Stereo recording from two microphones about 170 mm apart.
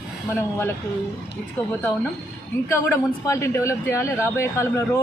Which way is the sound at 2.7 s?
15° left (ahead or behind).